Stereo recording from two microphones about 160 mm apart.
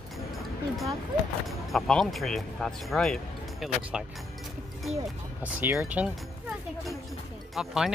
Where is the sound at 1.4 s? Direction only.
Centre (ahead or behind).